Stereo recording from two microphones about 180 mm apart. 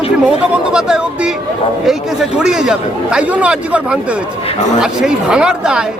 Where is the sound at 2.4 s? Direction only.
5° right (ahead or behind).